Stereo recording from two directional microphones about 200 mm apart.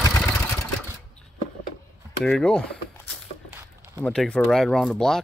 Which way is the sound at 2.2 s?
5° left (ahead or behind).